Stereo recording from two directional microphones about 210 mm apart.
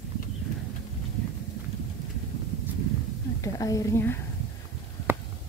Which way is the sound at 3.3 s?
15° left (ahead or behind).